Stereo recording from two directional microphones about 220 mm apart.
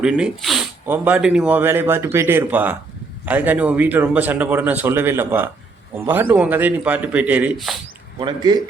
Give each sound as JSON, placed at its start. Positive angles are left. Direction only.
{"t": 0.0, "sound": "speech", "side_deg": -5}
{"t": 8.2, "sound": "speech", "side_deg": -20}